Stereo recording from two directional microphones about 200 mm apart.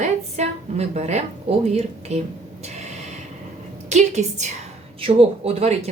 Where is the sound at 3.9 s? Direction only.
35° right (ahead or behind).